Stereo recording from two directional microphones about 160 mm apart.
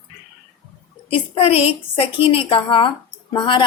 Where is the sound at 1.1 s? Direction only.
40° left (ahead or behind).